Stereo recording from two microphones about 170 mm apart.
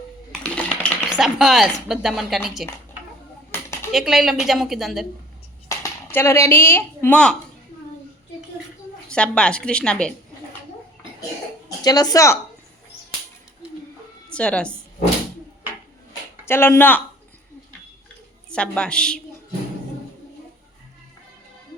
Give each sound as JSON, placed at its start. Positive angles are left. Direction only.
{"t": 0.3, "sound": "typing", "side_deg": 5}
{"t": 1.1, "sound": "speech", "side_deg": 0}
{"t": 3.9, "sound": "speech", "side_deg": 0}
{"t": 5.6, "sound": "speech", "side_deg": 15}
{"t": 9.0, "sound": "speech", "side_deg": 5}
{"t": 11.8, "sound": "speech", "side_deg": 25}
{"t": 14.3, "sound": "a woman's voice", "side_deg": 5}
{"t": 16.5, "sound": "speech", "side_deg": 15}
{"t": 18.5, "sound": "speech", "side_deg": 5}